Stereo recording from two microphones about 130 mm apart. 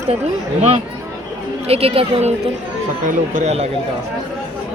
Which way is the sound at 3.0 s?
70° right (ahead or behind).